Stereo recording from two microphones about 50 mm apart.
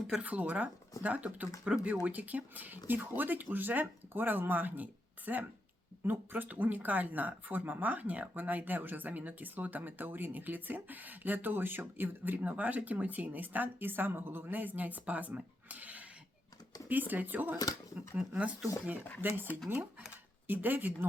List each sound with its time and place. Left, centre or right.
0.2 s speech: right
19.2 s speech: right
20.5 s speech: right